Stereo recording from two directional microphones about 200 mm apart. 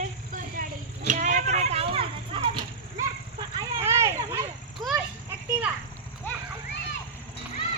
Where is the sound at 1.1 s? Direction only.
40° right (ahead or behind).